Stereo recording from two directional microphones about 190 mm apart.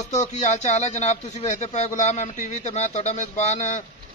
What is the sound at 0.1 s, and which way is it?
A man's voice, 35° left (ahead or behind).